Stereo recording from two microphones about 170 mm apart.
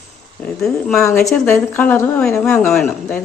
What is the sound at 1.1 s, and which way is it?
Speech, 15° left (ahead or behind).